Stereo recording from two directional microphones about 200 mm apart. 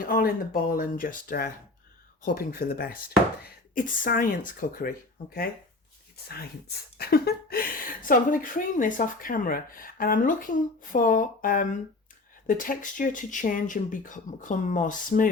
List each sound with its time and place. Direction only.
0.0 s speech: 45° left (ahead or behind)
7.0 s speech: 50° left (ahead or behind)